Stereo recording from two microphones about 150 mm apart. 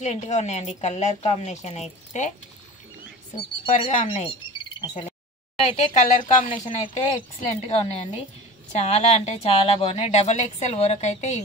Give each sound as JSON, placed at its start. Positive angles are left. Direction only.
{"t": 0.0, "sound": "a woman's voice", "side_deg": 50}
{"t": 3.7, "sound": "a woman's voice", "side_deg": 50}
{"t": 4.5, "sound": "a sound", "side_deg": 35}
{"t": 5.6, "sound": "a woman's voice", "side_deg": 50}